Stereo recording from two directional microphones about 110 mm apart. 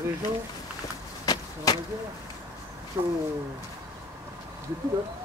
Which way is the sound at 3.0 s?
45° right (ahead or behind).